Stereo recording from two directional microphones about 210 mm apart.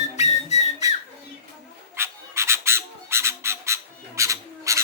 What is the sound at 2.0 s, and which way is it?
Squawk, 10° right (ahead or behind).